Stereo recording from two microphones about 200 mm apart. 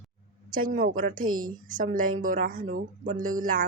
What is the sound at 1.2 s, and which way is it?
Speech, 90° right.